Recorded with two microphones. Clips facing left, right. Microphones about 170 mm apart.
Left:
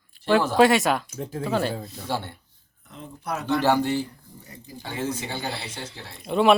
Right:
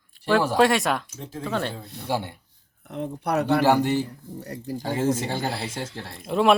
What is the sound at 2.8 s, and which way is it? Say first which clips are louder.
Speech: right 7 dB; 65° right (ahead or behind).